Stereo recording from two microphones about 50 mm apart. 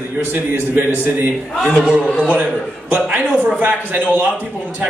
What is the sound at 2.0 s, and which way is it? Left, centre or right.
Speech, left.